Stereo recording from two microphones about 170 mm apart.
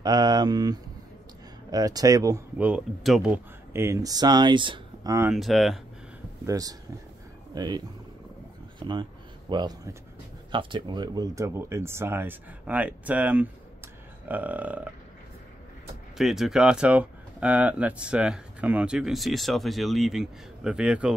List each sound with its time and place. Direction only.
0.0 s speech: 25° right (ahead or behind); by 3.3 s centre (ahead or behind)
3.7 s speech: 15° right (ahead or behind)
5.3 s speech: centre (ahead or behind)
6.4 s speech: 20° right (ahead or behind)
16.2 s speech: centre (ahead or behind)